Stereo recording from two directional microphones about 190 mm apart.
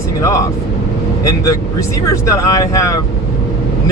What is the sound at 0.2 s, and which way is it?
Speech, 15° left (ahead or behind).